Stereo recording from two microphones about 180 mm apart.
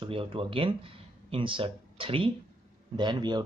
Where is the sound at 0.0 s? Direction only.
30° right (ahead or behind).